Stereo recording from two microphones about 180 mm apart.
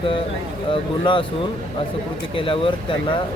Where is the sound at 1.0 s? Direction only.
30° left (ahead or behind).